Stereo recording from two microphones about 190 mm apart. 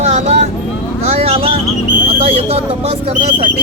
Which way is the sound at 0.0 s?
35° right (ahead or behind).